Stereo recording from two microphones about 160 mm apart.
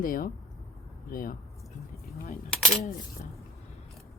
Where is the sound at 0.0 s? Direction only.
60° left (ahead or behind).